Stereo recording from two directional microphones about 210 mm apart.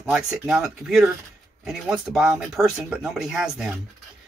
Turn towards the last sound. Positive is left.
turn(degrees=-5)  # may be behind; listen again after turning